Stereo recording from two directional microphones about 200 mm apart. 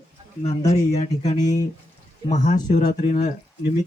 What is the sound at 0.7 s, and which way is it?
Speech, 35° left (ahead or behind).